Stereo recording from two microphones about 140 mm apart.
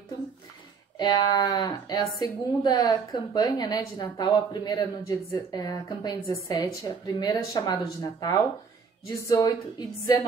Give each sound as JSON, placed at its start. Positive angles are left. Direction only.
{"t": 0.9, "sound": "a woman's voice", "side_deg": 30}
{"t": 9.3, "sound": "a woman's voice", "side_deg": 25}